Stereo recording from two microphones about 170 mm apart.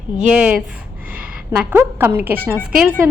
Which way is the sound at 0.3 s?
5° right (ahead or behind).